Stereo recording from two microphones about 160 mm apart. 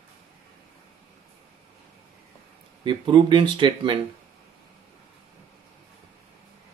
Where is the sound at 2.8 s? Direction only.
30° right (ahead or behind).